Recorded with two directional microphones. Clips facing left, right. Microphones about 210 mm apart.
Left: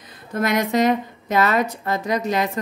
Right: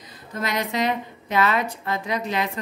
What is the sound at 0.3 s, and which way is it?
A woman's voice, 50° left (ahead or behind).